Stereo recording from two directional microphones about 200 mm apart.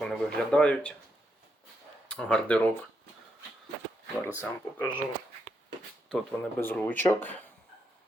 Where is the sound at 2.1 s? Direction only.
5° left (ahead or behind).